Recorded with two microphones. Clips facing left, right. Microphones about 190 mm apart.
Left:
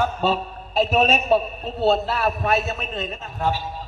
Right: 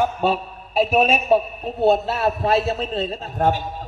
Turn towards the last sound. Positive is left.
turn(degrees=-50)  # may be behind; listen again after turning